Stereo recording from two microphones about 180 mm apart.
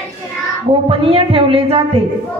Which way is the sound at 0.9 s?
30° right (ahead or behind).